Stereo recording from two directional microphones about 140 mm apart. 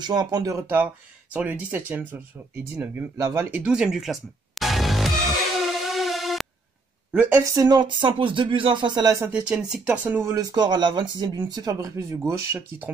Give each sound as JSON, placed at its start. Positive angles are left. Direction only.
{"t": 0.0, "sound": "speech", "side_deg": -30}
{"t": 3.6, "sound": "music", "side_deg": -5}
{"t": 7.1, "sound": "speech", "side_deg": -10}
{"t": 7.5, "sound": "speech", "side_deg": -30}
{"t": 9.2, "sound": "speech", "side_deg": -10}